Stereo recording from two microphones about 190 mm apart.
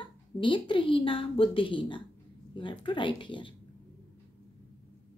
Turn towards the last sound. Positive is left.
turn(degrees=25)  # may be behind; listen again after turning